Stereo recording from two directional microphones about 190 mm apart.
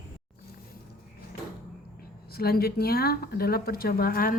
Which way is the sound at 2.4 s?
55° left (ahead or behind).